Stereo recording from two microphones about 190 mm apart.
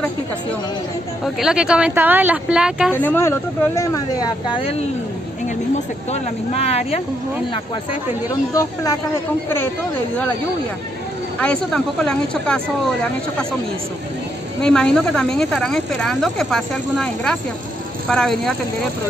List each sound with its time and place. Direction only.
1.2 s speech: 5° right (ahead or behind)
2.9 s speech: 10° left (ahead or behind); by 4.8 s 30° left (ahead or behind)
6.1 s speech: 35° left (ahead or behind)
11.4 s speech: 5° left (ahead or behind)
14.6 s speech: 5° left (ahead or behind)